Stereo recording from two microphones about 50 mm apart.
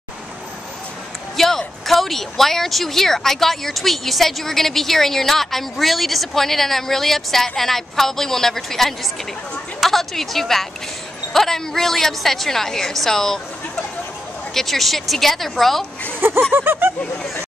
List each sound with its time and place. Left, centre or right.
1.3 s a woman's voice: centre
14.5 s speech: centre
16.2 s a sound: right